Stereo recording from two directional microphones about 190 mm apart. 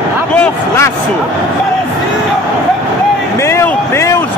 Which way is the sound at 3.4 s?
15° left (ahead or behind).